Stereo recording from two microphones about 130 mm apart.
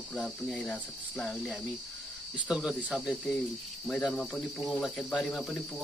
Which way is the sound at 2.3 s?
5° right (ahead or behind).